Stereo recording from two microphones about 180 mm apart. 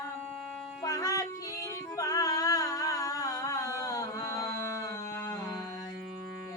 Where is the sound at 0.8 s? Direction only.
20° left (ahead or behind).